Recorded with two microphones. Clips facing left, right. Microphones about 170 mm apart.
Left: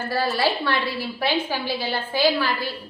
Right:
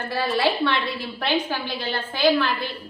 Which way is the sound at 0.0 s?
5° left (ahead or behind).